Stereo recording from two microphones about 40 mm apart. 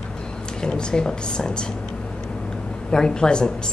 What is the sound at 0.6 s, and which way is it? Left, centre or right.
Speech, centre.